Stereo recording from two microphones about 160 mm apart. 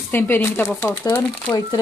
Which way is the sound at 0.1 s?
15° left (ahead or behind).